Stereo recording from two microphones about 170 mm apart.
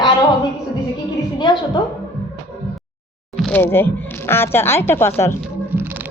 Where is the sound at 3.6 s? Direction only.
15° left (ahead or behind).